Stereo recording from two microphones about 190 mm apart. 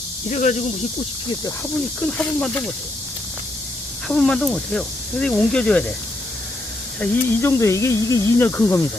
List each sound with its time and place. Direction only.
0.3 s speech: 40° left (ahead or behind)
2.0 s speech: 5° left (ahead or behind)
4.1 s speech: 5° left (ahead or behind)
7.0 s speech: 15° left (ahead or behind)